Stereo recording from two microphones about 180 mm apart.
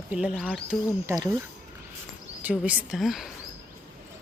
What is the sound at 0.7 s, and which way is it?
Speech, 15° right (ahead or behind).